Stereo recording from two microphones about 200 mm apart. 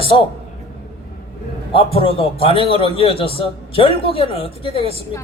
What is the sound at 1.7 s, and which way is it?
A man's voice, 25° left (ahead or behind).